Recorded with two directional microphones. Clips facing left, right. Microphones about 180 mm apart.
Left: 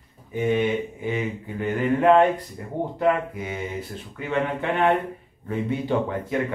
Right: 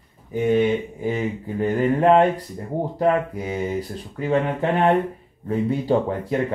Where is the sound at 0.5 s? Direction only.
35° right (ahead or behind).